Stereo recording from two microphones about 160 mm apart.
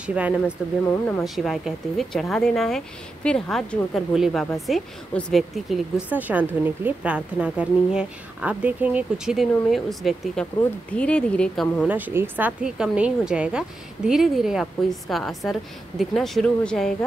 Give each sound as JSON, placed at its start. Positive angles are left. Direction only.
{"t": 0.0, "sound": "a woman's voice", "side_deg": -5}
{"t": 11.9, "sound": "a woman's voice", "side_deg": -15}